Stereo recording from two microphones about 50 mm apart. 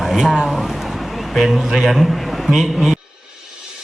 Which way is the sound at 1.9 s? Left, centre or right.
Centre.